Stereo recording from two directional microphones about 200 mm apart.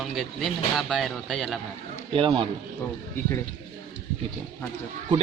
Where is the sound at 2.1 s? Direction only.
25° right (ahead or behind).